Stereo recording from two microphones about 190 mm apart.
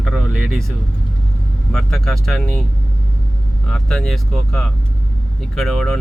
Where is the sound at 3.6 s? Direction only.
Centre (ahead or behind).